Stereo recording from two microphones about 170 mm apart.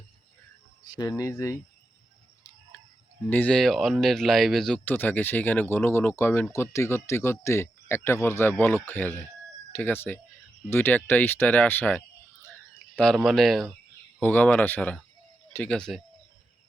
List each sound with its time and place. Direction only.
0.9 s speech: 20° left (ahead or behind)
3.2 s speech: 10° left (ahead or behind)